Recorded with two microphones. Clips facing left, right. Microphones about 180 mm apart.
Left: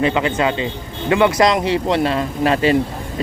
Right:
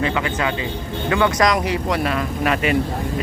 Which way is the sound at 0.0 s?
25° left (ahead or behind).